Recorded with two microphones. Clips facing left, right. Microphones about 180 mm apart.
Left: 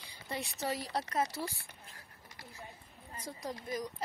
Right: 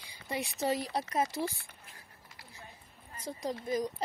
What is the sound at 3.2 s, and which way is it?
Speech, 20° right (ahead or behind).